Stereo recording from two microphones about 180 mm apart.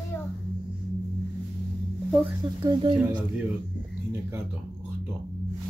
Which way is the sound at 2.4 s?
25° right (ahead or behind).